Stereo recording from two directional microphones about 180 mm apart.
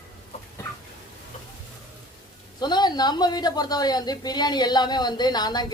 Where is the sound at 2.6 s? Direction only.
25° left (ahead or behind).